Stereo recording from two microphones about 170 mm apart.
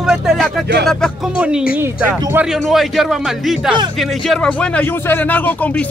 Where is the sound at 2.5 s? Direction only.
Centre (ahead or behind).